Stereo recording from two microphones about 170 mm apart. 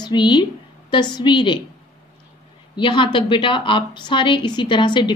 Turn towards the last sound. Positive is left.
turn(degrees=25)  # may be behind; listen again after turning